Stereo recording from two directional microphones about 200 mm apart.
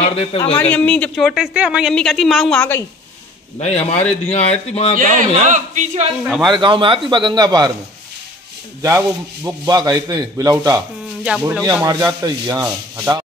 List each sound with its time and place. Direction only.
0.0 s a man's voice: 30° left (ahead or behind)
0.6 s speech: 5° left (ahead or behind)
3.5 s speech: 30° left (ahead or behind)
4.9 s a man's voice: 40° right (ahead or behind)
6.2 s speech: centre (ahead or behind)
6.5 s a man's voice: 25° right (ahead or behind)
8.8 s a man's voice: 15° right (ahead or behind)
11.2 s speech: 5° right (ahead or behind)
11.6 s a man's voice: 15° right (ahead or behind)